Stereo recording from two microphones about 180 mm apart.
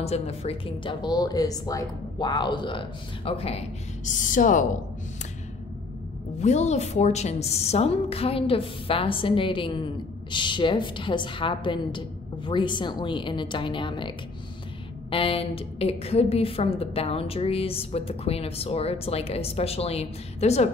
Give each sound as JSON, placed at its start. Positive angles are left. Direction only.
{"t": 0.0, "sound": "speech", "side_deg": 35}
{"t": 6.4, "sound": "a woman's voice", "side_deg": 40}